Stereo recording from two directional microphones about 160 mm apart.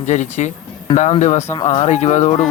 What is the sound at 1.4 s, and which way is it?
Speech, 25° left (ahead or behind).